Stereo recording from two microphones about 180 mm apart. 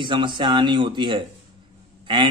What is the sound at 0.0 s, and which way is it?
Speech, 25° right (ahead or behind).